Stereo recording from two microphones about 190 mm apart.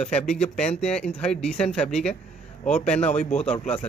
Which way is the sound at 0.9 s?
5° left (ahead or behind).